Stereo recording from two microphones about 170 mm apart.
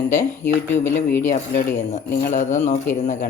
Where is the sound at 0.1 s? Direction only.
45° left (ahead or behind).